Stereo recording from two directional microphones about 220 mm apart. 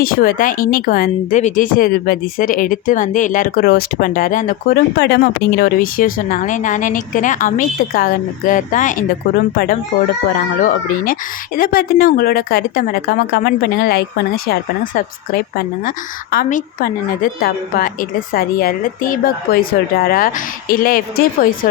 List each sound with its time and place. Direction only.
0.0 s a woman's voice: 40° left (ahead or behind)
10.2 s a woman's voice: 40° left (ahead or behind)